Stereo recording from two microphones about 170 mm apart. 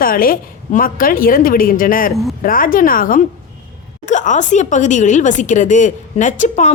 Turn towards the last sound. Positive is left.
turn(degrees=45)  # may be behind; listen again after turning